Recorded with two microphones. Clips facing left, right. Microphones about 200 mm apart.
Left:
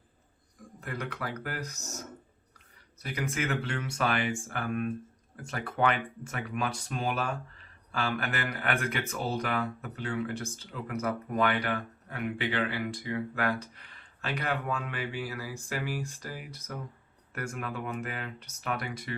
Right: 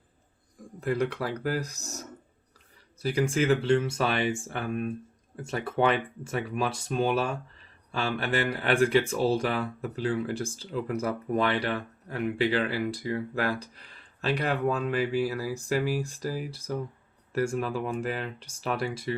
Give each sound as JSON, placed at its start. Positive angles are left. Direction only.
{"t": 0.8, "sound": "speech", "side_deg": -35}
{"t": 3.0, "sound": "speech", "side_deg": -30}